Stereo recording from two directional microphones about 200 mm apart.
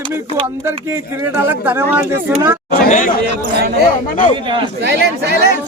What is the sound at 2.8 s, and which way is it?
Speech, 40° left (ahead or behind).